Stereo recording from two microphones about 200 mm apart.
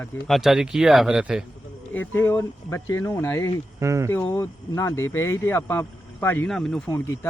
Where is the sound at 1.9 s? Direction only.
10° left (ahead or behind).